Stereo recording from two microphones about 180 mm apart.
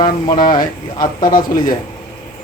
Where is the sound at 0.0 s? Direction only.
25° left (ahead or behind).